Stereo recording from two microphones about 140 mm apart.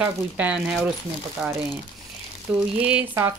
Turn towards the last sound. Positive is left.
turn(degrees=-15)  # may be behind; listen again after turning